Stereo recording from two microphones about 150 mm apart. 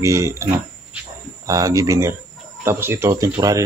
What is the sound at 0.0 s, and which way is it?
Speech, 20° right (ahead or behind).